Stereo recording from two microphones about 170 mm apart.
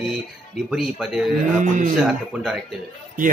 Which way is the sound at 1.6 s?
45° right (ahead or behind).